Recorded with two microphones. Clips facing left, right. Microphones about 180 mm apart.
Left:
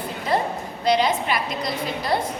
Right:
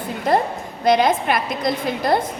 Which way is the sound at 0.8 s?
50° right (ahead or behind).